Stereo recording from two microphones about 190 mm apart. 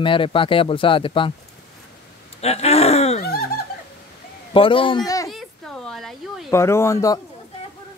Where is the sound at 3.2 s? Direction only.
55° left (ahead or behind).